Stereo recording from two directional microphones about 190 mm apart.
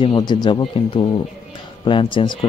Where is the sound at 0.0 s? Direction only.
25° left (ahead or behind).